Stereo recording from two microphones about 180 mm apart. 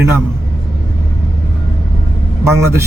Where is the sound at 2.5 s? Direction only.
15° right (ahead or behind).